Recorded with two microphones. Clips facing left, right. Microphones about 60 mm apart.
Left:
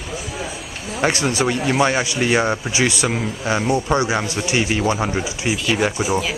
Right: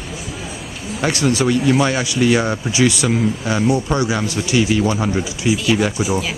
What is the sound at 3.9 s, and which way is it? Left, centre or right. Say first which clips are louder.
Speech: even; left.